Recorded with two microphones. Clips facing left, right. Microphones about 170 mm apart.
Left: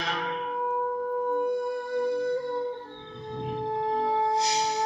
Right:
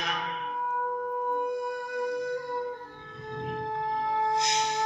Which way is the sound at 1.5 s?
25° left (ahead or behind).